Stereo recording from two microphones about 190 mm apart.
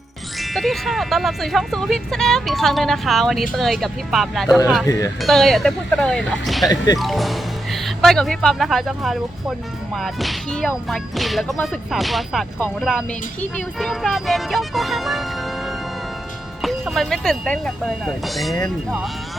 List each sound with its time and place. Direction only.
0.3 s speech: centre (ahead or behind)
4.4 s speech: 20° left (ahead or behind)
5.2 s speech: centre (ahead or behind)
6.7 s speech: 20° left (ahead or behind)
7.0 s speech: centre (ahead or behind)
16.6 s speech: centre (ahead or behind)